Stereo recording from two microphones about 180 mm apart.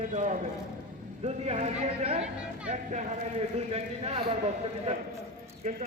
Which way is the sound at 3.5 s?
35° right (ahead or behind).